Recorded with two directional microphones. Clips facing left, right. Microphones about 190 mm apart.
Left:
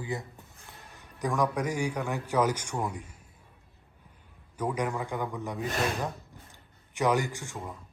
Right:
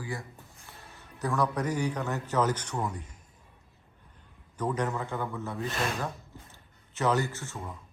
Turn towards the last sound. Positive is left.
turn(degrees=15)  # may be behind; listen again after turning